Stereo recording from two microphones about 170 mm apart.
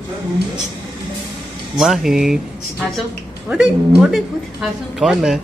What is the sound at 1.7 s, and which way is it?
Speech, 5° right (ahead or behind).